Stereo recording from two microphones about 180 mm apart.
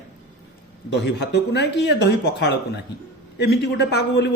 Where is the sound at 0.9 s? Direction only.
75° left (ahead or behind).